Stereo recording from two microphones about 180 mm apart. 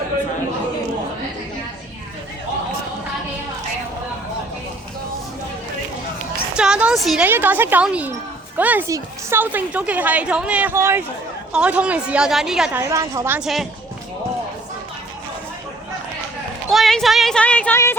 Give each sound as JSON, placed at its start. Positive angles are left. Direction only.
{"t": 6.6, "sound": "a woman's voice", "side_deg": -5}
{"t": 12.8, "sound": "a woman's voice", "side_deg": -15}
{"t": 16.6, "sound": "a woman's voice", "side_deg": 0}